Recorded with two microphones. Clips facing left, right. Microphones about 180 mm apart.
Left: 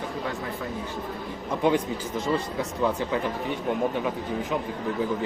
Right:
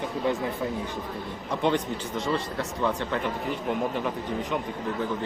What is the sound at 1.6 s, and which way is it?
Speech, 5° left (ahead or behind).